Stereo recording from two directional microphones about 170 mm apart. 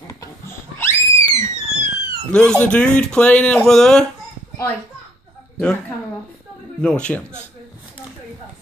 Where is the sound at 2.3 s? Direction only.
5° left (ahead or behind).